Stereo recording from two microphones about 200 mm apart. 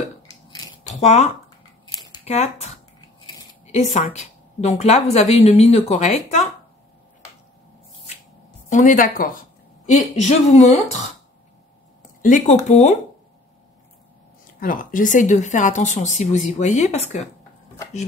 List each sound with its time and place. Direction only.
0.5 s scissors: 20° left (ahead or behind)
1.0 s a woman's voice: 35° left (ahead or behind)
3.9 s a woman's voice: 35° left (ahead or behind)
8.6 s a woman's voice: 40° left (ahead or behind)
12.2 s a woman's voice: 40° left (ahead or behind)
14.6 s a woman's voice: 45° left (ahead or behind)